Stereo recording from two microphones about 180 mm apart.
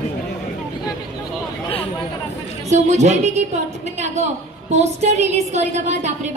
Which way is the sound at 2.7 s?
40° right (ahead or behind).